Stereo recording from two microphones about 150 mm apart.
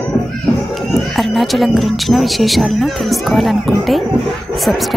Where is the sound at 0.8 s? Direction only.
Centre (ahead or behind).